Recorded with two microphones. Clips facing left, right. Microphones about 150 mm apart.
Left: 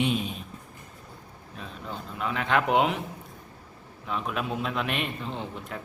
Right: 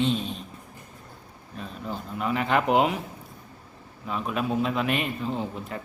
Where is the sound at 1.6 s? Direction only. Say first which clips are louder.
Right 4 dB; centre (ahead or behind).